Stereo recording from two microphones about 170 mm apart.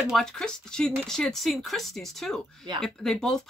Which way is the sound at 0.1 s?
5° left (ahead or behind).